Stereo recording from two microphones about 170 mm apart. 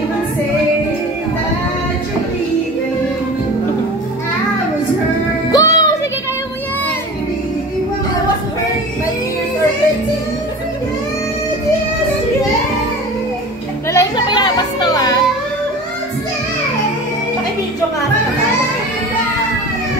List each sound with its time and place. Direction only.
5.5 s music: 20° left (ahead or behind)
13.9 s music: 25° left (ahead or behind)